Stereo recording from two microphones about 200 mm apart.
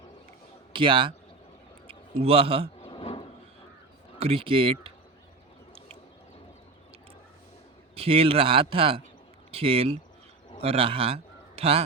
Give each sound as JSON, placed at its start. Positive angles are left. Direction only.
{"t": 0.7, "sound": "a man's voice", "side_deg": -25}
{"t": 2.8, "sound": "a sound", "side_deg": 25}
{"t": 4.2, "sound": "speech", "side_deg": -25}
{"t": 7.9, "sound": "a man's voice", "side_deg": -30}